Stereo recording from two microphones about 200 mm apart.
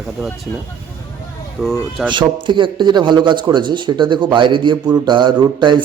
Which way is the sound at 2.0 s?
25° right (ahead or behind).